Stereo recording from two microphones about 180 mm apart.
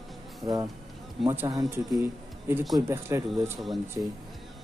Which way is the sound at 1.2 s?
15° right (ahead or behind).